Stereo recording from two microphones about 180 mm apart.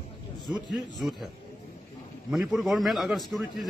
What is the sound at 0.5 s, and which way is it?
Speech, centre (ahead or behind).